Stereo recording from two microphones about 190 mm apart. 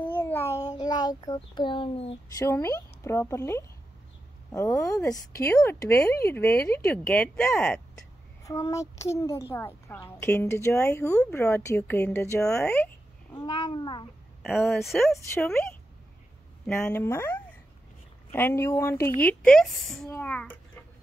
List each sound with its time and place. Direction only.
0.0 s a sound: 10° left (ahead or behind); by 2.1 s 30° left (ahead or behind)
2.3 s a woman's voice: 15° left (ahead or behind)
13.3 s speech: 25° left (ahead or behind)
14.4 s speech: centre (ahead or behind)
16.6 s a woman's voice: 10° left (ahead or behind)